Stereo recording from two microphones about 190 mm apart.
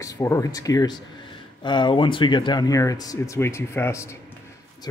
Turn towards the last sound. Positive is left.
turn(degrees=15)  # may be behind; listen again after turning